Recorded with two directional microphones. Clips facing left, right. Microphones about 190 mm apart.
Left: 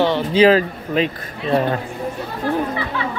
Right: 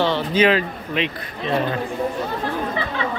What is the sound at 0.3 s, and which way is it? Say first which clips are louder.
Speech: left 7 dB; 35° left (ahead or behind).